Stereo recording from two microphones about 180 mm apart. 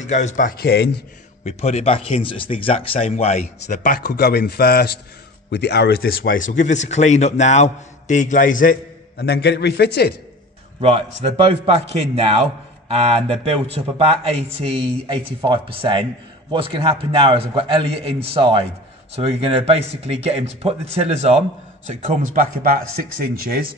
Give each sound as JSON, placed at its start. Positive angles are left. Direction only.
{"t": 0.0, "sound": "a man's voice", "side_deg": 40}
{"t": 1.4, "sound": "a man's voice", "side_deg": 35}
{"t": 10.8, "sound": "a man's voice", "side_deg": -35}
{"t": 22.0, "sound": "speech", "side_deg": -45}